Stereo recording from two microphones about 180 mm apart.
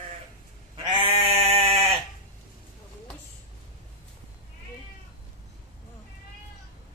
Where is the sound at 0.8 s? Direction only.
30° right (ahead or behind).